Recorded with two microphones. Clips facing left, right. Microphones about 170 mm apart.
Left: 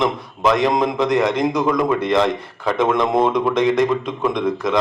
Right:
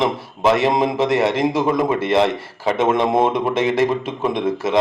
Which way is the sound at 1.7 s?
25° right (ahead or behind).